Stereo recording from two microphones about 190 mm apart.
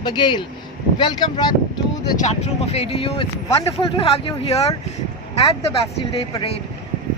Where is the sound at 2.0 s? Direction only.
40° left (ahead or behind).